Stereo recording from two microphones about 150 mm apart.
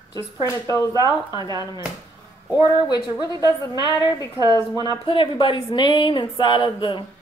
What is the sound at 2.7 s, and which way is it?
Speech, 30° left (ahead or behind).